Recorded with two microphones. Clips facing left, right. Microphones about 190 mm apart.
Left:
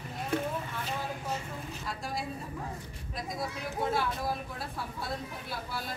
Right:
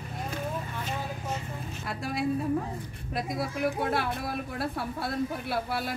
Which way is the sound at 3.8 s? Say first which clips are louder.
Right 2 dB; 65° right (ahead or behind).